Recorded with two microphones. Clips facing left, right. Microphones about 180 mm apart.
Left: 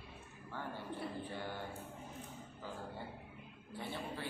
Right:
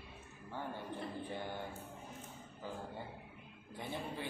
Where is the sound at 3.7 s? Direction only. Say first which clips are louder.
Right 1 dB; 15° right (ahead or behind).